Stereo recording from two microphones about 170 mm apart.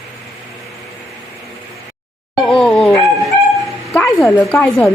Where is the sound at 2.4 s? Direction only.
5° left (ahead or behind).